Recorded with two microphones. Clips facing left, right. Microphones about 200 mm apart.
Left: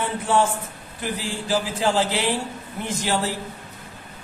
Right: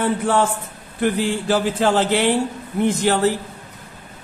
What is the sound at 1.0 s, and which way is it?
A man's voice, 60° right (ahead or behind).